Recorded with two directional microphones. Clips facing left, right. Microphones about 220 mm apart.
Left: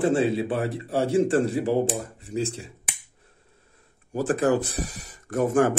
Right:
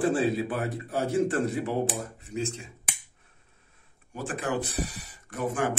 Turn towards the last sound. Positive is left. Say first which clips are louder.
# left 8 dB
turn(degrees=45)  # may be behind; listen again after turning